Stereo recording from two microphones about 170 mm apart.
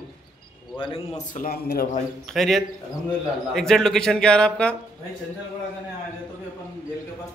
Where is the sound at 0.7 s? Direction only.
30° left (ahead or behind).